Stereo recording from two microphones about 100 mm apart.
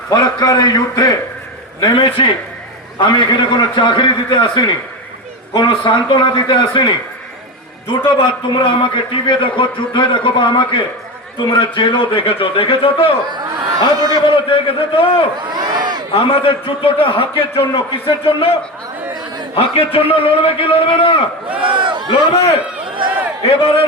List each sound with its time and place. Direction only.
0.1 s a man's voice: 40° left (ahead or behind)
1.8 s a man's voice: 55° left (ahead or behind)
8.2 s a man's voice: 55° left (ahead or behind)
13.9 s a man's voice: 40° right (ahead or behind)
14.3 s a man's voice: 65° left (ahead or behind)
15.5 s crowd: 45° right (ahead or behind)
16.1 s a man's voice: 65° left (ahead or behind)
19.5 s a man's voice: 70° left (ahead or behind)
21.6 s a sound: 55° right (ahead or behind)
22.3 s a man's voice: 90° left
23.0 s a sound: 15° right (ahead or behind)